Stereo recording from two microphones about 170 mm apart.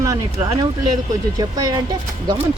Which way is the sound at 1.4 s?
20° right (ahead or behind).